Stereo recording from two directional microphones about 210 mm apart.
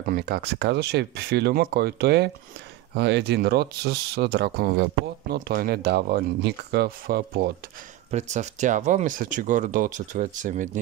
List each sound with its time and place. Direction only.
0.1 s speech: 50° right (ahead or behind)
8.1 s speech: 35° right (ahead or behind)